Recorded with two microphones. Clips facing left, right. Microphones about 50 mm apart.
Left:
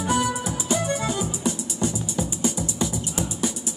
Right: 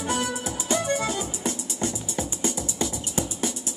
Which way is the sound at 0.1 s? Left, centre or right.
Centre.